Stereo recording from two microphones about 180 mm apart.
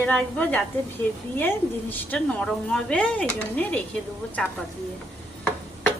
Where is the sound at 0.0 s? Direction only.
10° left (ahead or behind).